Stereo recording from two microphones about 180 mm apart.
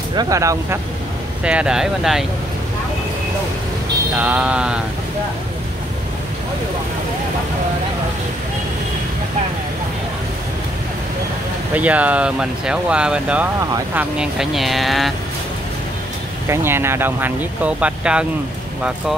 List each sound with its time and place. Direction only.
0.1 s speech: 20° right (ahead or behind)
1.4 s speech: 5° right (ahead or behind)
4.2 s speech: 5° right (ahead or behind)
11.7 s speech: 10° right (ahead or behind)
16.4 s speech: 15° right (ahead or behind)